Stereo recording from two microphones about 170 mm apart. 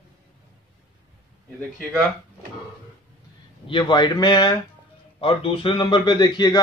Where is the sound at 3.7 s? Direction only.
25° left (ahead or behind).